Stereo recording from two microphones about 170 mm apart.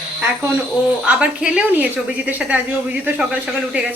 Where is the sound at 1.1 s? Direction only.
5° right (ahead or behind).